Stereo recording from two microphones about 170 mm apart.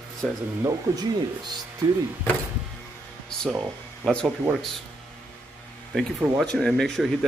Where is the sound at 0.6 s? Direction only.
20° right (ahead or behind).